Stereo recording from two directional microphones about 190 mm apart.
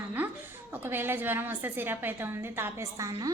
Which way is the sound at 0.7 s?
10° right (ahead or behind).